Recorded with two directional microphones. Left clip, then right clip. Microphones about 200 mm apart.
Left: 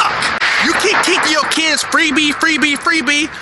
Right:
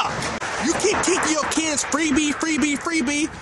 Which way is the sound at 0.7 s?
10° right (ahead or behind).